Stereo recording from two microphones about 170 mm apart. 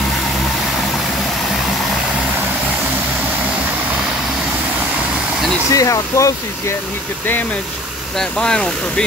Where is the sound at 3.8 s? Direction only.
10° right (ahead or behind).